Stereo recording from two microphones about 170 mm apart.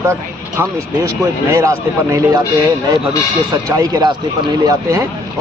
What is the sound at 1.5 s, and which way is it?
Speech, 20° right (ahead or behind).